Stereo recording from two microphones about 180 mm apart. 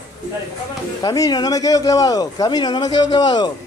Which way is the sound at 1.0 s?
20° left (ahead or behind).